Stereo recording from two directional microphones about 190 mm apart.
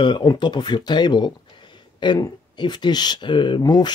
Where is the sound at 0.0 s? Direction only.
25° left (ahead or behind).